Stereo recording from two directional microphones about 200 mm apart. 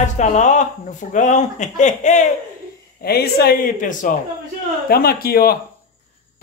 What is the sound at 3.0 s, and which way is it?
Speech, 50° left (ahead or behind).